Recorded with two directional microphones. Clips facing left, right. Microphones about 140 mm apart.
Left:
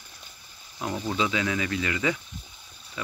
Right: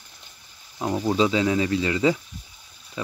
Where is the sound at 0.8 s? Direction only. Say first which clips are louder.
Right 6 dB; 30° right (ahead or behind).